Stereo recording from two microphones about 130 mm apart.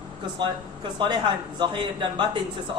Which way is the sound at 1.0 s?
40° right (ahead or behind).